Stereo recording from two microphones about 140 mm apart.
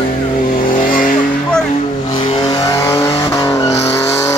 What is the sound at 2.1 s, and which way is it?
Vehicle, 35° left (ahead or behind).